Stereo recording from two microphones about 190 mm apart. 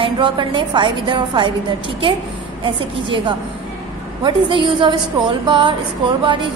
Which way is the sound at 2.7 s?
25° right (ahead or behind).